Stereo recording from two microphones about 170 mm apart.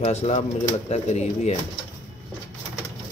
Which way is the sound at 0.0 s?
40° left (ahead or behind).